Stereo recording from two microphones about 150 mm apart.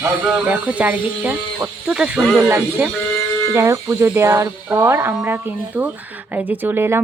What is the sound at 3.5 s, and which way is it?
A woman's voice, 20° right (ahead or behind).